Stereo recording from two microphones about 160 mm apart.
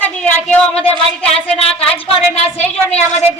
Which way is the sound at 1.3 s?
40° left (ahead or behind).